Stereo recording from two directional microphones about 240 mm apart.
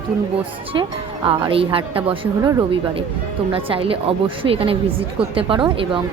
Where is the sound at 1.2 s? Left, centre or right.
Right.